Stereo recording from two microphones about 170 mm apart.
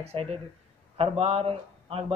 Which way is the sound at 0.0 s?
35° right (ahead or behind).